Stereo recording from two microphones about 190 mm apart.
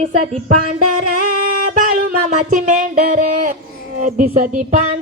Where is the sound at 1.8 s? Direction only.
45° right (ahead or behind).